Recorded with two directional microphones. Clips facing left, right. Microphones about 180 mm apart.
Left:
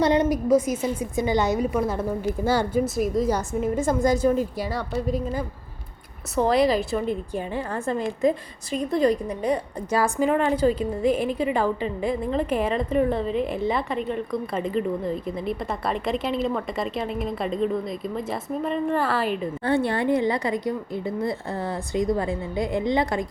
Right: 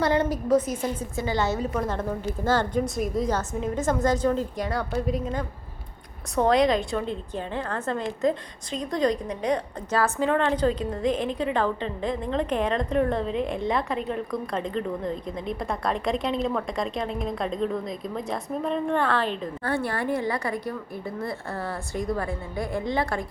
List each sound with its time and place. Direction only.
0.0 s a woman's voice: 15° left (ahead or behind)
19.6 s a woman's voice: 20° left (ahead or behind)